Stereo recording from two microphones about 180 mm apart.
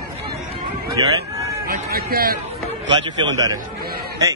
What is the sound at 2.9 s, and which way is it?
Speech, 20° right (ahead or behind).